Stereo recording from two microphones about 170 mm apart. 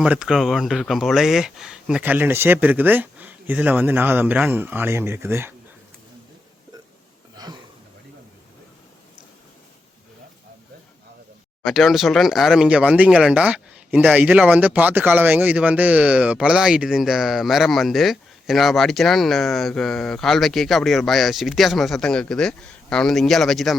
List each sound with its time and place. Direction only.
0.0 s speech: 5° right (ahead or behind)
7.4 s a sound: 20° right (ahead or behind)
11.6 s speech: centre (ahead or behind)